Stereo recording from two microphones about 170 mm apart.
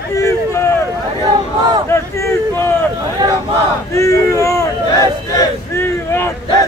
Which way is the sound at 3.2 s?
25° right (ahead or behind).